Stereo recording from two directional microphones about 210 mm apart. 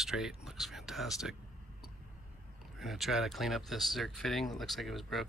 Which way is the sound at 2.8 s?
Centre (ahead or behind).